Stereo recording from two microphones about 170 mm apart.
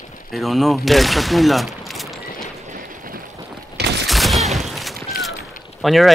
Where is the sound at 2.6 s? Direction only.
50° right (ahead or behind).